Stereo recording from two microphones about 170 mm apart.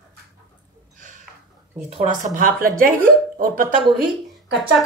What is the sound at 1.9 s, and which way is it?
Speech, 35° right (ahead or behind).